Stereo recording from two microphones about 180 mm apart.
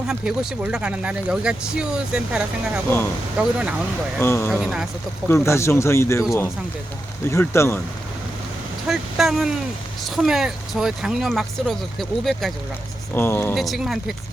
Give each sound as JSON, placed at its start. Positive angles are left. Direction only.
{"t": 0.1, "sound": "speech", "side_deg": -5}
{"t": 4.2, "sound": "speech", "side_deg": 15}
{"t": 4.6, "sound": "speech", "side_deg": 0}
{"t": 5.3, "sound": "speech", "side_deg": 15}
{"t": 7.3, "sound": "speech", "side_deg": 15}
{"t": 8.9, "sound": "speech", "side_deg": 0}
{"t": 13.1, "sound": "speech", "side_deg": 10}
{"t": 13.6, "sound": "speech", "side_deg": 0}